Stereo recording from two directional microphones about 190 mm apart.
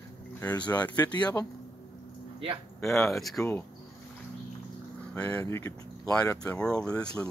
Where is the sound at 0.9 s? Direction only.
20° left (ahead or behind).